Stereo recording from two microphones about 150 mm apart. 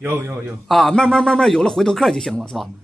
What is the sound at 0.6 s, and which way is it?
A man's voice, centre (ahead or behind).